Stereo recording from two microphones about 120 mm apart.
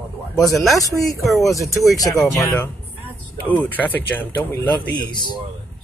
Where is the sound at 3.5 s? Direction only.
15° left (ahead or behind).